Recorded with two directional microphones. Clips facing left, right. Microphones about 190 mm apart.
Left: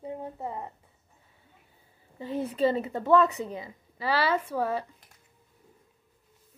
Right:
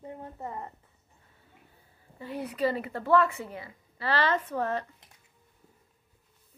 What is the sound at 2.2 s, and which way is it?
Speech, 25° left (ahead or behind).